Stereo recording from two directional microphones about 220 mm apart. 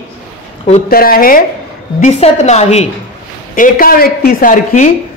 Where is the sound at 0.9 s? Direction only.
40° left (ahead or behind).